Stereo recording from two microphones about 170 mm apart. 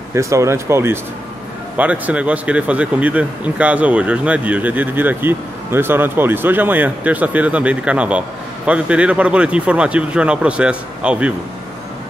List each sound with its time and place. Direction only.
0.1 s speech: 20° right (ahead or behind)